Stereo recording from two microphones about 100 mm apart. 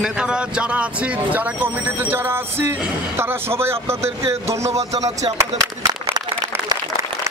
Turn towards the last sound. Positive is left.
turn(degrees=-35)  # may be behind; listen again after turning